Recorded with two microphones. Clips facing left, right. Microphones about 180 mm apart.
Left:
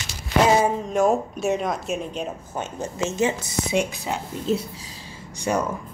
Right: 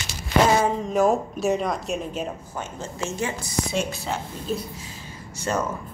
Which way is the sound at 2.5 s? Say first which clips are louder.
Left 6 dB; 20° left (ahead or behind).